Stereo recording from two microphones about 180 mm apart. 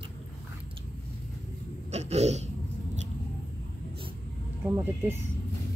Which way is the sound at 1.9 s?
35° right (ahead or behind).